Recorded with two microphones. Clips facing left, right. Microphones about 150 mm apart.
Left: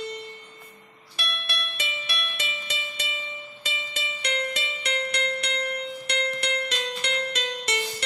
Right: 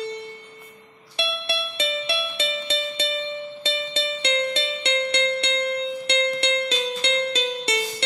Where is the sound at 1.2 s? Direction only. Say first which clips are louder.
Right 8 dB; 30° right (ahead or behind).